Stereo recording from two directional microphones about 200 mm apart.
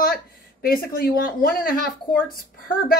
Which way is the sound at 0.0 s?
45° left (ahead or behind).